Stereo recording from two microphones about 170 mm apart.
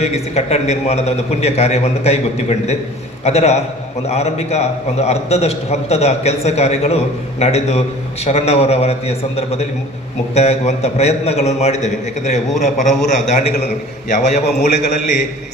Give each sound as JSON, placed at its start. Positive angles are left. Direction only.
{"t": 0.0, "sound": "a man's voice", "side_deg": 40}